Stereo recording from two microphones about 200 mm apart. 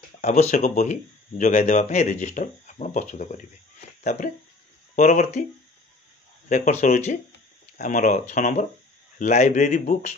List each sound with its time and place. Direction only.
0.2 s speech: 35° left (ahead or behind)
6.5 s speech: 40° left (ahead or behind)